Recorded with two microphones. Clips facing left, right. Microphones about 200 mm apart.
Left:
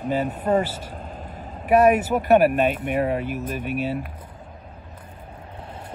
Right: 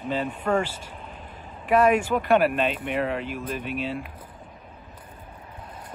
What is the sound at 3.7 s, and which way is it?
Speech, 45° left (ahead or behind).